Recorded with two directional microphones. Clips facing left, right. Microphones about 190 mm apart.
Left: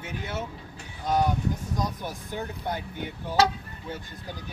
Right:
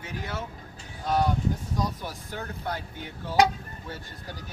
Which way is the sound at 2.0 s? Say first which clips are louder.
Left 3 dB; 15° left (ahead or behind).